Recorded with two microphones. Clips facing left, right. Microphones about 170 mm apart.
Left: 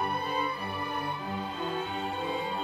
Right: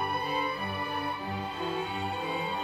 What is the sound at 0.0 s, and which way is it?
Music, 10° right (ahead or behind).